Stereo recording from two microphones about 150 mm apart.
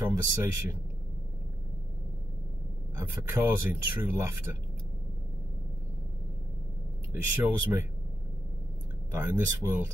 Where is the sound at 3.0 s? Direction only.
15° right (ahead or behind).